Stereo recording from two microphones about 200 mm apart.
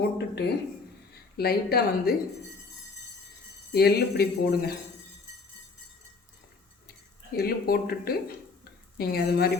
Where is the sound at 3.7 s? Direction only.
50° left (ahead or behind).